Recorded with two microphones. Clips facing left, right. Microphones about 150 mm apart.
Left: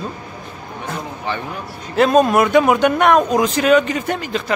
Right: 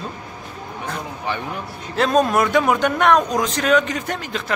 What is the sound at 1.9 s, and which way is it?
A man's voice, 5° left (ahead or behind).